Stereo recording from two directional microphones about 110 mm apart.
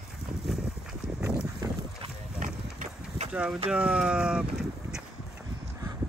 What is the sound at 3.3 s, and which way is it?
Speech, 10° right (ahead or behind).